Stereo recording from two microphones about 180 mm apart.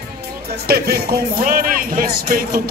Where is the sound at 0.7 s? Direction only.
60° right (ahead or behind).